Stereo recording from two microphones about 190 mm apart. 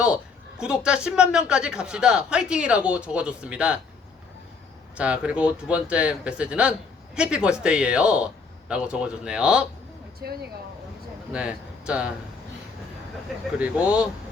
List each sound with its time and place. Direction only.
0.6 s speech: 5° right (ahead or behind)
4.9 s speech: 5° right (ahead or behind)
10.2 s speech: 55° right (ahead or behind)
11.3 s speech: 5° right (ahead or behind)
13.6 s speech: 5° right (ahead or behind)